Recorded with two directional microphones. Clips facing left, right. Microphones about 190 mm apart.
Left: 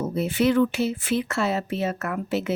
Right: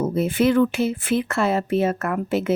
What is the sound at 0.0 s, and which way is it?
Speech, 50° right (ahead or behind).